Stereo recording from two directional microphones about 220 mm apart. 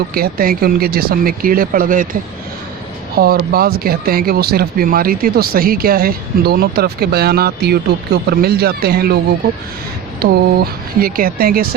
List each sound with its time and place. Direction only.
0.1 s speech: 40° right (ahead or behind)
3.2 s speech: 45° right (ahead or behind)